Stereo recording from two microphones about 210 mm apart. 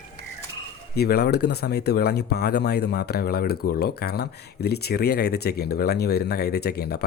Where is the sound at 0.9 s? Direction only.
50° left (ahead or behind).